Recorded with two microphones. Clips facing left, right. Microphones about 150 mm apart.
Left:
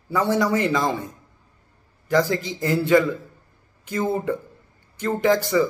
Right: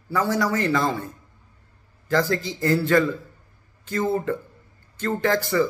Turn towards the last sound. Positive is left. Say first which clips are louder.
# left 2 dB
turn(degrees=15)  # may be behind; listen again after turning